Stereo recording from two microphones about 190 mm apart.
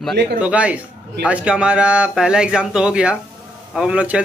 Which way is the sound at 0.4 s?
5° right (ahead or behind).